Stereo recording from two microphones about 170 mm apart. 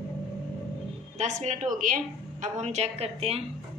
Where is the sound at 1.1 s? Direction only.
45° right (ahead or behind).